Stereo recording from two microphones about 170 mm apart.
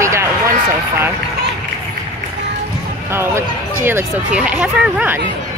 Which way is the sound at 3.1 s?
15° right (ahead or behind).